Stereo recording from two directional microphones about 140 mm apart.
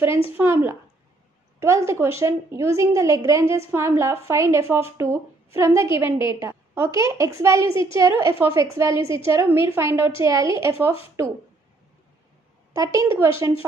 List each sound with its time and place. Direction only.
0.4 s a woman's voice: 15° right (ahead or behind)
12.7 s a woman's voice: 20° right (ahead or behind)